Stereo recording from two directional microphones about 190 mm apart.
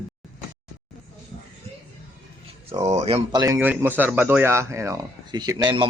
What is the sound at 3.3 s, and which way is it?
Speech, 20° right (ahead or behind).